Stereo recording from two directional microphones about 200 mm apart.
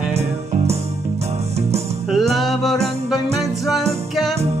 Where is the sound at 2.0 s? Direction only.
Centre (ahead or behind).